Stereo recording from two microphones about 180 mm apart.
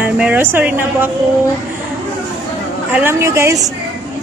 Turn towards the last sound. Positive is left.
turn(degrees=-15)  # may be behind; listen again after turning